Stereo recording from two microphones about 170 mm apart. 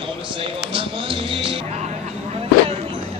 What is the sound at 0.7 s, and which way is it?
Music, 30° right (ahead or behind).